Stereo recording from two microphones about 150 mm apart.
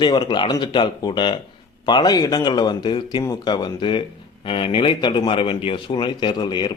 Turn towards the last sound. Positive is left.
turn(degrees=30)  # may be behind; listen again after turning